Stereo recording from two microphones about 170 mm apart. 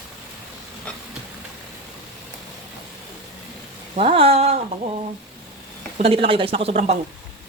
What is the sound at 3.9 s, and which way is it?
Speech, 35° right (ahead or behind).